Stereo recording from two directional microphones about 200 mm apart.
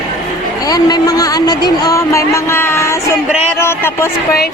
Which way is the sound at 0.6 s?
20° left (ahead or behind).